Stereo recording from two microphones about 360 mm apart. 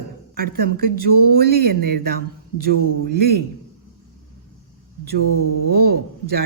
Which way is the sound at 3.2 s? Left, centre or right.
Right.